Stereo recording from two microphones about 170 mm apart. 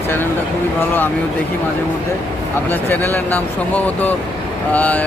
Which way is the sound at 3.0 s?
10° left (ahead or behind).